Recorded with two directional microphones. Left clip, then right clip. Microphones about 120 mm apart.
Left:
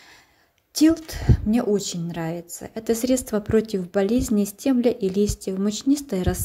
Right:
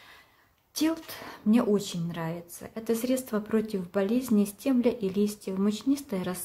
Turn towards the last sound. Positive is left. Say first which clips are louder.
# left 7 dB
turn(degrees=35)  # may be behind; listen again after turning